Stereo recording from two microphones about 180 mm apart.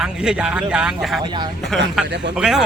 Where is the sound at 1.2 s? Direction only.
25° right (ahead or behind).